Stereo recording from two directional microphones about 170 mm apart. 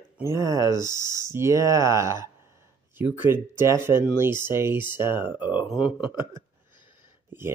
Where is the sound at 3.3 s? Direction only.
15° right (ahead or behind).